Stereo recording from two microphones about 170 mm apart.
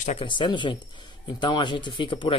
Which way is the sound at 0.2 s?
30° left (ahead or behind).